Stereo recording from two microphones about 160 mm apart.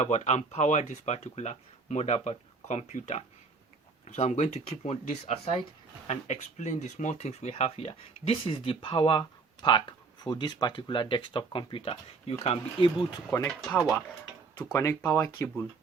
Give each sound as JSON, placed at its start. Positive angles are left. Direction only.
{"t": 0.0, "sound": "speech", "side_deg": 45}
{"t": 13.6, "sound": "speech", "side_deg": 0}
{"t": 14.5, "sound": "speech", "side_deg": 15}